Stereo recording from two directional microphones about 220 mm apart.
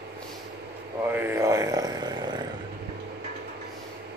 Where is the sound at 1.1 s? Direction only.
10° right (ahead or behind).